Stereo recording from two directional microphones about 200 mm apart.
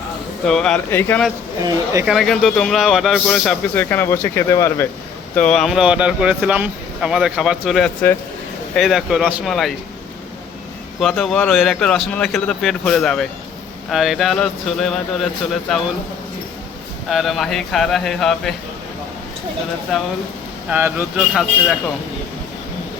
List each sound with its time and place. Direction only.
0.4 s a man's voice: 5° left (ahead or behind)
1.6 s speech: 15° right (ahead or behind)
2.0 s a man's voice: centre (ahead or behind)
11.0 s a man's voice: centre (ahead or behind)
17.1 s a man's voice: centre (ahead or behind)
19.9 s a man's voice: centre (ahead or behind)